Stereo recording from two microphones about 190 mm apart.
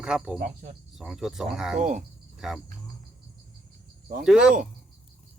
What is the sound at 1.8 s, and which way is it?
Speech, 40° right (ahead or behind).